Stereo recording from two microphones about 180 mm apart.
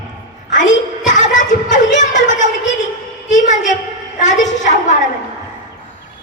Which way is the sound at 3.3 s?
40° left (ahead or behind).